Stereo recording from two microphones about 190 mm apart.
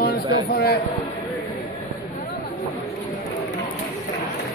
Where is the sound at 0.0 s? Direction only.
55° left (ahead or behind).